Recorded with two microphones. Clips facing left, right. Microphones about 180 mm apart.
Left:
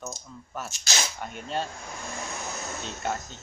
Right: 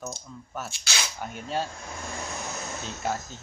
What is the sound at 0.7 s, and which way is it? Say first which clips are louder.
Speech: left 3 dB; 45° left (ahead or behind).